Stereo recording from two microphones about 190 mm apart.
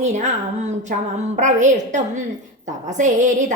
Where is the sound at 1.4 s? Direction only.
40° right (ahead or behind).